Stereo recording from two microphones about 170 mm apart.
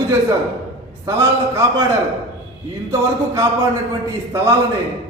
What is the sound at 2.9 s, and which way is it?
A man's voice, 20° right (ahead or behind).